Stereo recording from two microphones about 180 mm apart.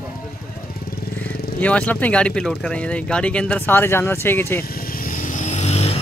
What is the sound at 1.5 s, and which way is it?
Speech, 10° left (ahead or behind).